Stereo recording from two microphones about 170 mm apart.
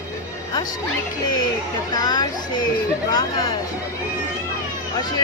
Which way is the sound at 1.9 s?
25° left (ahead or behind).